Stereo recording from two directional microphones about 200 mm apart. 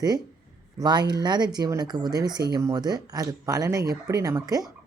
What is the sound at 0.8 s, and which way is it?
Speech, 20° right (ahead or behind).